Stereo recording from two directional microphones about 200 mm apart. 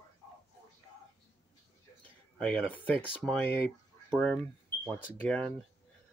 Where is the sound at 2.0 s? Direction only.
5° left (ahead or behind).